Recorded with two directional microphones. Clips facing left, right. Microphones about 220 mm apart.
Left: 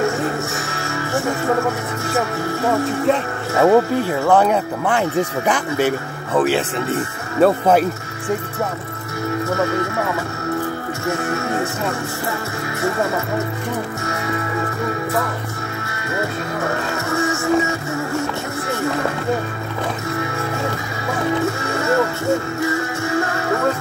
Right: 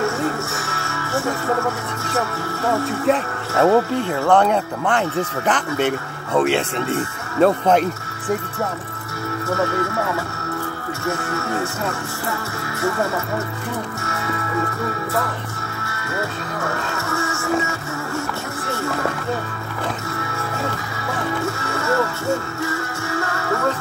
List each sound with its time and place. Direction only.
0.7 s music: 15° left (ahead or behind)
2.1 s speech: 15° left (ahead or behind)
11.1 s speech: 15° left (ahead or behind)
16.6 s music: 15° left (ahead or behind)
21.4 s music: 15° left (ahead or behind)